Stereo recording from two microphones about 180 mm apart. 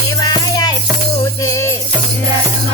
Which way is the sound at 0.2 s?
20° left (ahead or behind).